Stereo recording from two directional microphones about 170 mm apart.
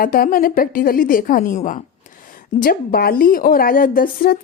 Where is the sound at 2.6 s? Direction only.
60° left (ahead or behind).